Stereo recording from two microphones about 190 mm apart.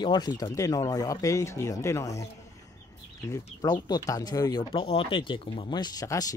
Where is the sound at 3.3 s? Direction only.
20° left (ahead or behind).